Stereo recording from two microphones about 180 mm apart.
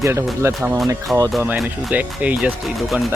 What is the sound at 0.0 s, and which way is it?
Speech, 15° right (ahead or behind).